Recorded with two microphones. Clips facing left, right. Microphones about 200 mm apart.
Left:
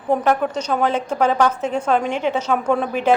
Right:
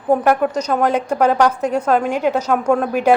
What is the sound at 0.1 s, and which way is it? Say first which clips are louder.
A woman's voice: right 3 dB; 10° right (ahead or behind).